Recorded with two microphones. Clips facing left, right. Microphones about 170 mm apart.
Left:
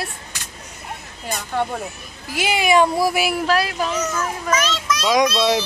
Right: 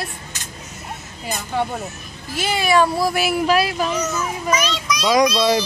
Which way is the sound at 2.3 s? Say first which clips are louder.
Left 1 dB; 15° left (ahead or behind).